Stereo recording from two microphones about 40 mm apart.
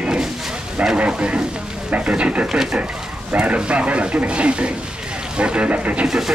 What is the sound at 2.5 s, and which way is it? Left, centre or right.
Speech, centre.